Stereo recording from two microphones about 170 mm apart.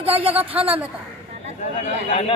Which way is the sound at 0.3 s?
10° right (ahead or behind).